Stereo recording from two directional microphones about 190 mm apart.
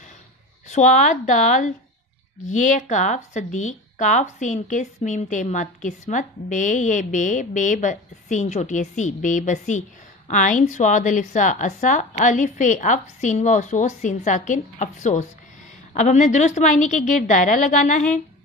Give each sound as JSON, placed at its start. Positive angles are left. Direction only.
{"t": 0.7, "sound": "a woman's voice", "side_deg": 40}